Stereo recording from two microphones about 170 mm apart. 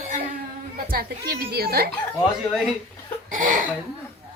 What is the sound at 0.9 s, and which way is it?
A woman's voice, 65° right (ahead or behind).